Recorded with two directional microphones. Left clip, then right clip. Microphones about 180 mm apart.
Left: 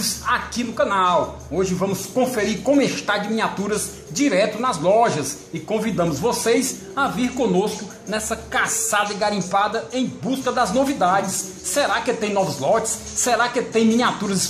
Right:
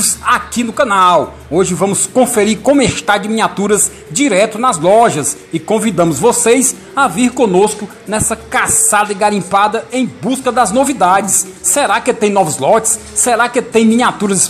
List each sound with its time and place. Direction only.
0.2 s a man's voice: 30° right (ahead or behind)